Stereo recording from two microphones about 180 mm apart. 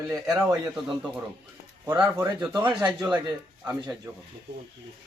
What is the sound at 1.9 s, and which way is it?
Speech, 15° right (ahead or behind).